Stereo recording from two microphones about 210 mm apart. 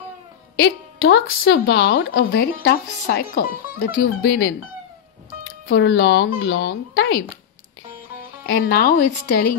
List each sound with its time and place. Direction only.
0.6 s a woman's voice: 60° left (ahead or behind)
2.3 s speech: 45° left (ahead or behind)
5.7 s a woman's voice: 65° left (ahead or behind)
8.5 s speech: 50° left (ahead or behind)